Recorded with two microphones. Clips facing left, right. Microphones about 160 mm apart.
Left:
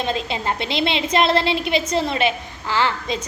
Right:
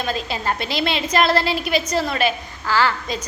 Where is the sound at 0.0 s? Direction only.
25° left (ahead or behind).